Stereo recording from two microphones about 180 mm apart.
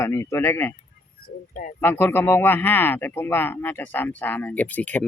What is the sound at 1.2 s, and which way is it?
Speech, 50° left (ahead or behind).